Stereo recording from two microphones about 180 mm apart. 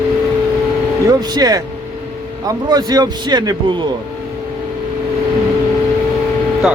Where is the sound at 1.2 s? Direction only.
20° right (ahead or behind).